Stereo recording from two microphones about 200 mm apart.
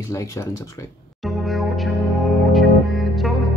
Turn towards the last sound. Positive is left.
turn(degrees=0)  # may be behind; listen again after turning